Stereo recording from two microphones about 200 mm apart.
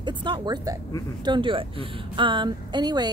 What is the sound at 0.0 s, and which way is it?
A woman's voice, 25° right (ahead or behind).